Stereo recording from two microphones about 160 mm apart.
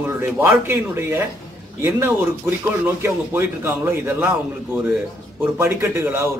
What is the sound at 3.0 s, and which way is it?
Speech, 15° right (ahead or behind).